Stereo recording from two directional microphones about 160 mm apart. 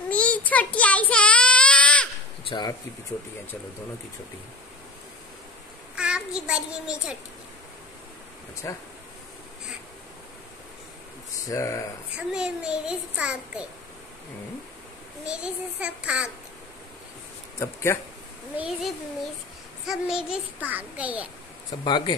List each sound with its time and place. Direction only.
0.1 s child singing: 10° left (ahead or behind)
5.9 s a child's voice: 5° right (ahead or behind)
8.6 s speech: 20° left (ahead or behind)
11.4 s speech: 20° left (ahead or behind)
12.2 s a child's voice: 5° right (ahead or behind)
15.2 s a child's voice: 5° right (ahead or behind)
17.6 s speech: 15° left (ahead or behind)
18.6 s a child's voice: centre (ahead or behind)
21.8 s speech: 30° left (ahead or behind)